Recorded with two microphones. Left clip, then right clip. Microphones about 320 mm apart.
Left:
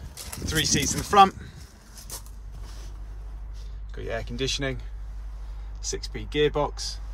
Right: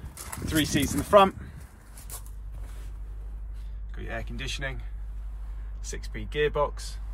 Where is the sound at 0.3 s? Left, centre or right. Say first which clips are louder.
Left 2 dB; centre.